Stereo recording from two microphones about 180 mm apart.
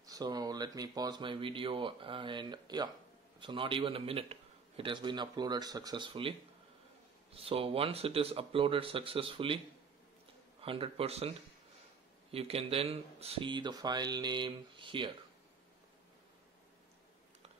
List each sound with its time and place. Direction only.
0.0 s a man's voice: 20° right (ahead or behind)
7.3 s speech: 30° right (ahead or behind)
10.6 s a man's voice: 30° right (ahead or behind)